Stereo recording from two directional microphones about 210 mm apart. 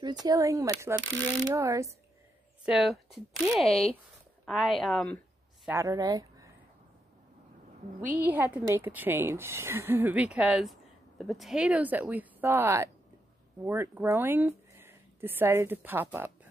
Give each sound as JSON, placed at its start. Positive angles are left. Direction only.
{"t": 0.0, "sound": "a woman's voice", "side_deg": -20}
{"t": 5.7, "sound": "speech", "side_deg": -15}
{"t": 8.1, "sound": "a woman's voice", "side_deg": -10}